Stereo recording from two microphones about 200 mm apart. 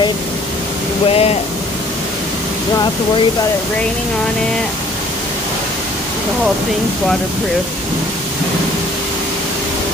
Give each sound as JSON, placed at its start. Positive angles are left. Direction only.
{"t": 1.0, "sound": "speech", "side_deg": 30}